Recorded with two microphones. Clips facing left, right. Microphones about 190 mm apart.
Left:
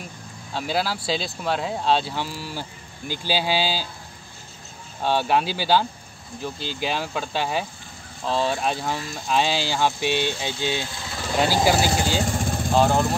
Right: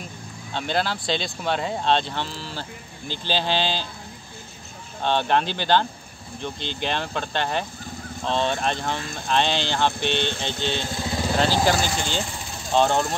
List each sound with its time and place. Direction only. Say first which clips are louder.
0.5 s speech: even; 5° left (ahead or behind)
5.0 s speech: even; 5° left (ahead or behind)
11.0 s vehicle: right 7 dB; 25° right (ahead or behind)
11.3 s speech: left 2 dB; 10° left (ahead or behind)
12.2 s vehicle: left 6 dB; 45° left (ahead or behind)
12.7 s speech: even; 5° left (ahead or behind)